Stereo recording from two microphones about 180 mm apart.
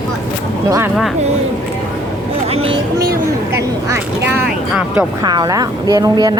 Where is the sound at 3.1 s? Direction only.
15° right (ahead or behind).